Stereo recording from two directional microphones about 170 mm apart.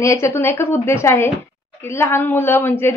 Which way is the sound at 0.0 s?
15° left (ahead or behind).